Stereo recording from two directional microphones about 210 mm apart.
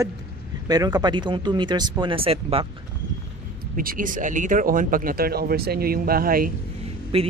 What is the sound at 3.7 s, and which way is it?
Speech, 40° right (ahead or behind).